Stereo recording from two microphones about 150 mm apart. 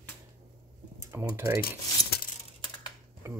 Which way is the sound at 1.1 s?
15° right (ahead or behind).